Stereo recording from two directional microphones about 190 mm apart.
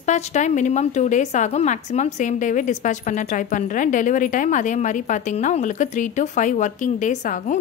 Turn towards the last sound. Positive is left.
turn(degrees=40)  # may be behind; listen again after turning